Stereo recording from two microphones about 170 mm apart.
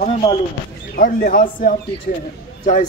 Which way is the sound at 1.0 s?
55° left (ahead or behind).